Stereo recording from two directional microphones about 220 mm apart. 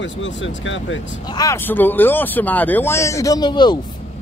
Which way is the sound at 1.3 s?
15° left (ahead or behind).